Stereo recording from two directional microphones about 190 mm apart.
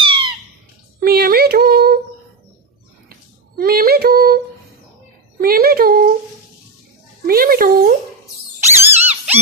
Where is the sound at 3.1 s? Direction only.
50° right (ahead or behind).